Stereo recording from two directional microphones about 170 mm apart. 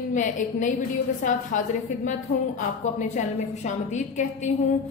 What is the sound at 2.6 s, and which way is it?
A woman's voice, 45° left (ahead or behind).